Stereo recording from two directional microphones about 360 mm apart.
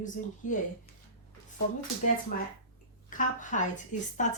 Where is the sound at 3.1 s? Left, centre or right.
Left.